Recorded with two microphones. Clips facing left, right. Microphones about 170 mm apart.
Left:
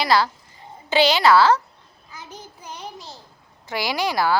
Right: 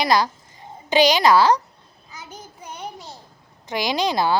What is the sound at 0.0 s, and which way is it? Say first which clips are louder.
A woman's voice: even; 15° right (ahead or behind).